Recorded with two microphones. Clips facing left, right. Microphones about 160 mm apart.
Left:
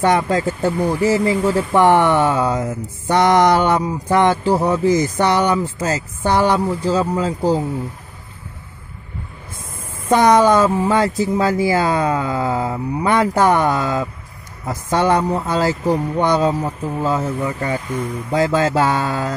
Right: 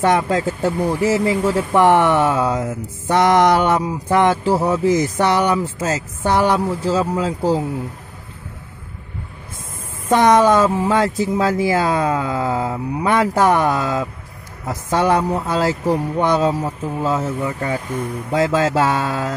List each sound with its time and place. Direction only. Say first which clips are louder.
0.0 s speech: even; centre (ahead or behind)
10.0 s speech: even; centre (ahead or behind)